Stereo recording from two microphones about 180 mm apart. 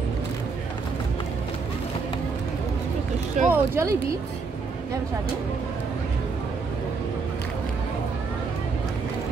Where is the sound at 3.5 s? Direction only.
15° right (ahead or behind).